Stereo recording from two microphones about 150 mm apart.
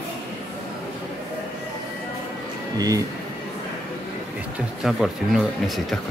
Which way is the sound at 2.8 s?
25° right (ahead or behind).